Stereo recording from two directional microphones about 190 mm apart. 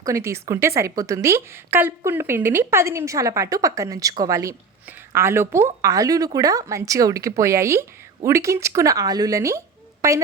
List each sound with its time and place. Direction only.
0.0 s a woman's voice: 15° right (ahead or behind)